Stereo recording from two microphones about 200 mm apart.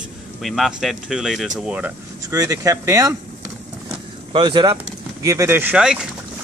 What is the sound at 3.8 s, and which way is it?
Vehicle, 25° right (ahead or behind).